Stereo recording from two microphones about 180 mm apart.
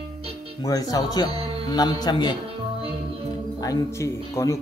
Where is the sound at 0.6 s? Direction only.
20° left (ahead or behind).